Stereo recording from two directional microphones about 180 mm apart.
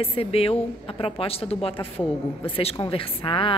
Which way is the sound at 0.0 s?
30° left (ahead or behind).